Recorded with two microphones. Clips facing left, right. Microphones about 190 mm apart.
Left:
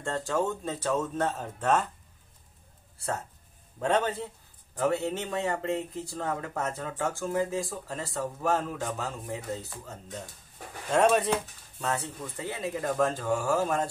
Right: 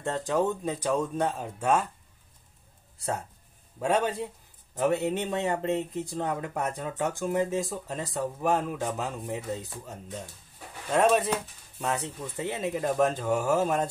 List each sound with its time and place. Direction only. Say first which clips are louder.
0.0 s speech: right 2 dB; 20° right (ahead or behind)
3.8 s speech: right 1 dB; 10° right (ahead or behind)
10.9 s speech: even; centre (ahead or behind)
11.8 s speech: right 1 dB; 15° right (ahead or behind)